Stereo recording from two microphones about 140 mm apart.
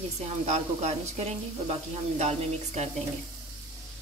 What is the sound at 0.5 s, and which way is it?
Speech, 50° right (ahead or behind).